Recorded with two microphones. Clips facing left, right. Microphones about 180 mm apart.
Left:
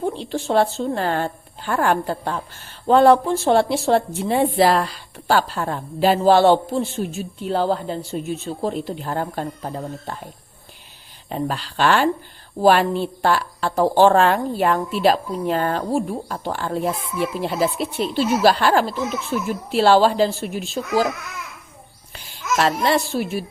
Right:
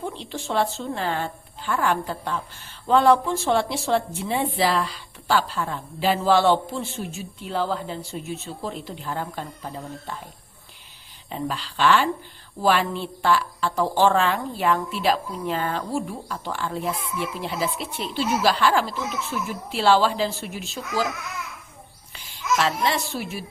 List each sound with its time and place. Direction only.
0.0 s speech: 40° left (ahead or behind)
1.8 s a woman's voice: 55° left (ahead or behind)
2.8 s speech: 40° left (ahead or behind)
11.3 s speech: 45° left (ahead or behind)
22.1 s babbling: 45° left (ahead or behind)